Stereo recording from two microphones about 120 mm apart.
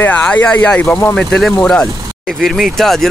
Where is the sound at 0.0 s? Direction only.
10° left (ahead or behind).